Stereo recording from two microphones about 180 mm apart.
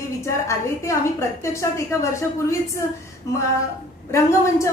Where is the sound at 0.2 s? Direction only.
15° left (ahead or behind).